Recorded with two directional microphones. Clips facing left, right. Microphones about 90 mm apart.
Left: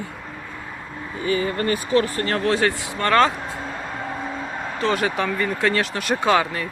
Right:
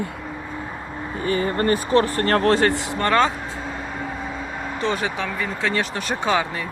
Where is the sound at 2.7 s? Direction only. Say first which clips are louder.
Right 2 dB; 25° right (ahead or behind).